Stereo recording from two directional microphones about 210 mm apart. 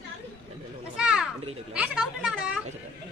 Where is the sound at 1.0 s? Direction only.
5° right (ahead or behind).